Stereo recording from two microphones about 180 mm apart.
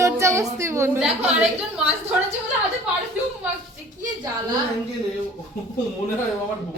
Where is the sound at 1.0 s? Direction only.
5° right (ahead or behind).